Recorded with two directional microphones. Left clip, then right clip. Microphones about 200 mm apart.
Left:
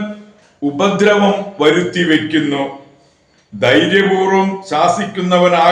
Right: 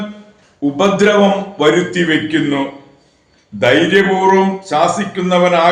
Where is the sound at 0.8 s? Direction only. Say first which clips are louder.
Right 1 dB; 5° right (ahead or behind).